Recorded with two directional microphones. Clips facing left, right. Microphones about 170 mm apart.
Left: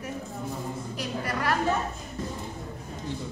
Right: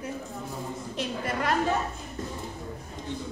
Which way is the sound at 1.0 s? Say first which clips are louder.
Right 1 dB; 25° right (ahead or behind).